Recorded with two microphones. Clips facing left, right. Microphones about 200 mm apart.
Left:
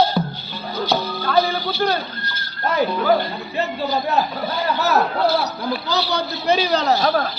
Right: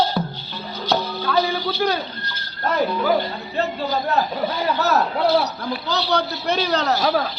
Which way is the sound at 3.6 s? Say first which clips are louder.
Even; 5° left (ahead or behind).